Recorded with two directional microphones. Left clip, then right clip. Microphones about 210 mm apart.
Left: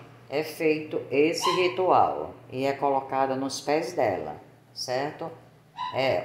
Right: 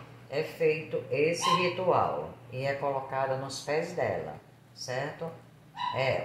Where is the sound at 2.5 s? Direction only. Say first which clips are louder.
Left 6 dB; 55° left (ahead or behind).